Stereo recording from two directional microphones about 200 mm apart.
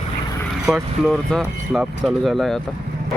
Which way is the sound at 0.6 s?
Centre (ahead or behind).